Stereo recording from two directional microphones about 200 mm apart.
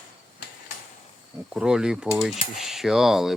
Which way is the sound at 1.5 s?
5° right (ahead or behind).